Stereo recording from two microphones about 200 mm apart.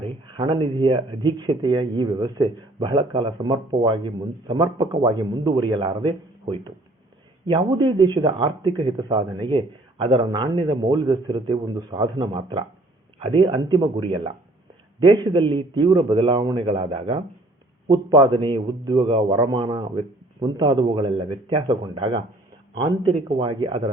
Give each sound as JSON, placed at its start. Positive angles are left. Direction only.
{"t": 0.0, "sound": "speech", "side_deg": -25}